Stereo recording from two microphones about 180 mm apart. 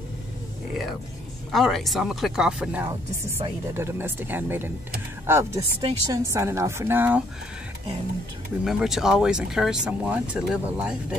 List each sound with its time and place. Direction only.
1.5 s a woman's voice: centre (ahead or behind)
8.6 s speech: centre (ahead or behind)